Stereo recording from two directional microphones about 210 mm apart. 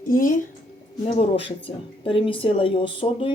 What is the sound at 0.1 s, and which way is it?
Speech, 40° left (ahead or behind).